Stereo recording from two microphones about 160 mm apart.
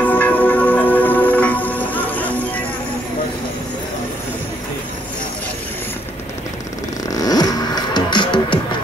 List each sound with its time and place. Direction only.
0.0 s music: 10° left (ahead or behind)
7.1 s music: 25° left (ahead or behind)